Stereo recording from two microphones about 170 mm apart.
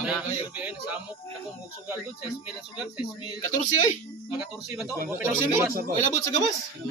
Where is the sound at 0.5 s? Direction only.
10° right (ahead or behind).